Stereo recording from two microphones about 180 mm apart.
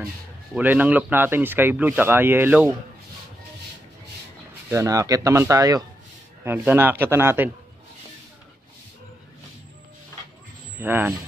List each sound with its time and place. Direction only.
0.6 s speech: 10° right (ahead or behind)
4.6 s speech: 15° right (ahead or behind)
10.8 s speech: 10° right (ahead or behind)